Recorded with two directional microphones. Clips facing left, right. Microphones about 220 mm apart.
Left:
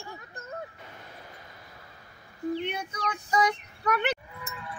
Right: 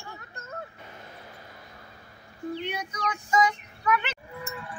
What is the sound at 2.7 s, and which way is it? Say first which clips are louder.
Child singing: right 1 dB; 35° left (ahead or behind).